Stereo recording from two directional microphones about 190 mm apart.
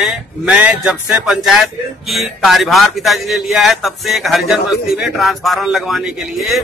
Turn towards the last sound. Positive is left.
turn(degrees=0)  # may be behind; listen again after turning